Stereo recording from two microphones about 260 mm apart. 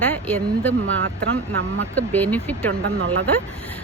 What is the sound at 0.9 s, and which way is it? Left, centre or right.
Speech, right.